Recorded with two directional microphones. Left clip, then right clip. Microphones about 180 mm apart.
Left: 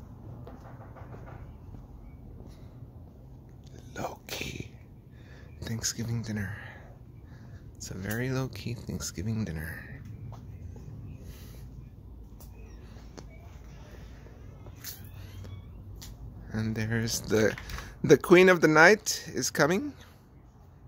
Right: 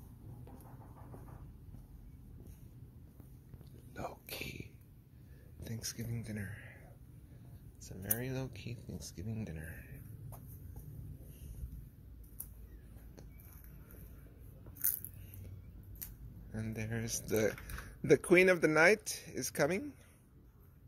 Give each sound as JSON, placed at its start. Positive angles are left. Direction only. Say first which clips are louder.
{"t": 3.9, "sound": "whispering", "louder": "left 8 dB", "side_deg": 15}
{"t": 5.6, "sound": "speech", "louder": "left 10 dB", "side_deg": 20}
{"t": 7.8, "sound": "speech", "louder": "left 9 dB", "side_deg": 30}
{"t": 16.5, "sound": "speech", "louder": "left 10 dB", "side_deg": 30}